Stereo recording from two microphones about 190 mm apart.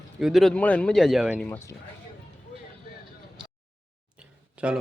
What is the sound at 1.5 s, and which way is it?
Speech, 15° left (ahead or behind).